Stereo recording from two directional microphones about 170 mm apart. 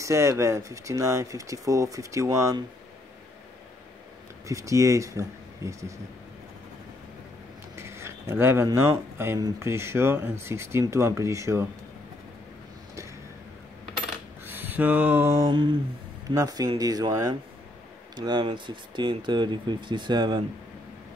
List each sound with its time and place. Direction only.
0.0 s speech: 15° right (ahead or behind)
4.5 s speech: 20° right (ahead or behind)
7.7 s speech: 15° right (ahead or behind)
14.4 s a sound: 10° right (ahead or behind)
16.3 s speech: 20° right (ahead or behind)